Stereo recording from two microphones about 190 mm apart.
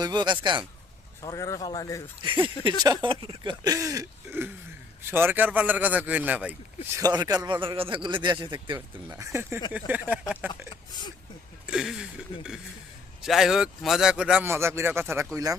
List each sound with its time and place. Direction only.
0.0 s speech: 25° right (ahead or behind)
1.2 s speech: 20° left (ahead or behind)
2.2 s speech: 25° right (ahead or behind); by 6.6 s 10° right (ahead or behind)
6.9 s speech: 20° right (ahead or behind)
11.6 s a man's voice: 5° right (ahead or behind)